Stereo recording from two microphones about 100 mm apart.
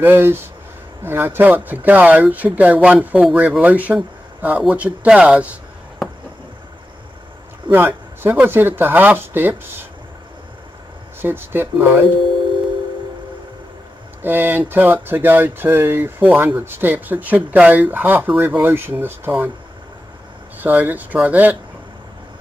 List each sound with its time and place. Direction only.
0.0 s speech: 20° right (ahead or behind)
7.7 s speech: 20° right (ahead or behind)
11.1 s speech: 20° right (ahead or behind)
14.2 s speech: 20° right (ahead or behind)
20.5 s speech: 20° right (ahead or behind)